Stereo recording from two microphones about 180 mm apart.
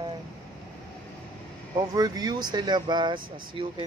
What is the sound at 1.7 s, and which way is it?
Speech, 20° right (ahead or behind).